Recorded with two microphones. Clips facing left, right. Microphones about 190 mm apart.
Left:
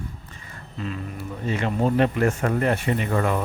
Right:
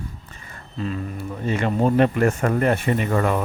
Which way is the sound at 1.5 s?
50° right (ahead or behind).